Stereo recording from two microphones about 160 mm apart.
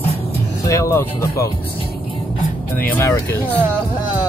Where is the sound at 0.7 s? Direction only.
20° left (ahead or behind).